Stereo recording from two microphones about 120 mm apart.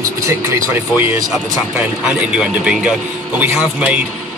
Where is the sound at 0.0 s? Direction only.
25° right (ahead or behind).